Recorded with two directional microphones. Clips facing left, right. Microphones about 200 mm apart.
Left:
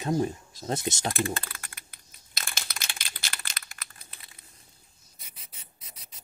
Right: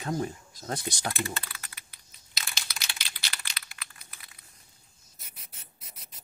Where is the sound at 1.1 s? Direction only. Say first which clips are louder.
Left 5 dB; 50° left (ahead or behind).